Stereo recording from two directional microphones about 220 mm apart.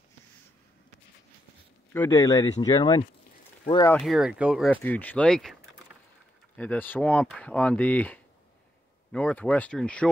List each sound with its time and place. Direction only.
2.0 s speech: 15° left (ahead or behind)
3.9 s speech: centre (ahead or behind)
4.6 s speech: 5° left (ahead or behind)